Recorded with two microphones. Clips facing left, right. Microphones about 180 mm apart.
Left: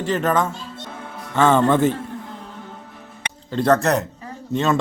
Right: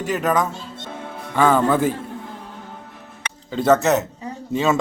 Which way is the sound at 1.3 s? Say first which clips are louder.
Left 1 dB; 10° right (ahead or behind).